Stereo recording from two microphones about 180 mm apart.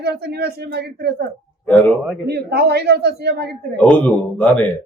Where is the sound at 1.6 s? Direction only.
10° left (ahead or behind).